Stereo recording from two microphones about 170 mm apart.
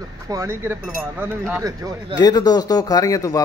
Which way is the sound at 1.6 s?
25° right (ahead or behind).